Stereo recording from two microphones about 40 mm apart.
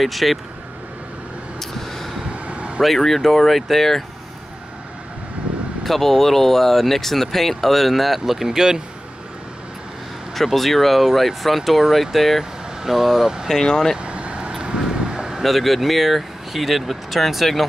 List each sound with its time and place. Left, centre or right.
0.0 s speech: centre
1.6 s vehicle: centre
2.4 s vehicle: right
2.8 s speech: centre
5.9 s speech: centre
10.3 s speech: centre
13.5 s speech: centre
14.0 s vehicle: right
15.4 s speech: centre